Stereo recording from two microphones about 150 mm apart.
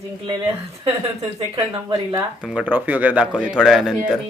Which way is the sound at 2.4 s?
10° right (ahead or behind).